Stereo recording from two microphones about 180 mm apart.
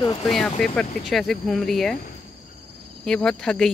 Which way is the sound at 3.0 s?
5° left (ahead or behind).